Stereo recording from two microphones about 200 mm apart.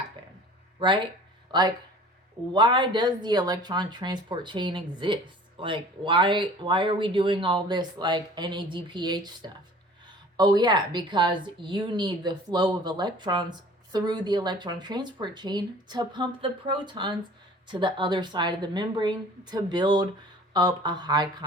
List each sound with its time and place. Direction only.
0.8 s speech: 25° right (ahead or behind)